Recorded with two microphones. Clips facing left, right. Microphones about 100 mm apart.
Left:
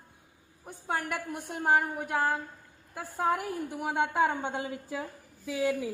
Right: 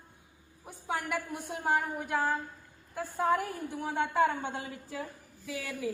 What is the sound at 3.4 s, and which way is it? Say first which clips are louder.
A woman's voice: left 1 dB; 10° left (ahead or behind).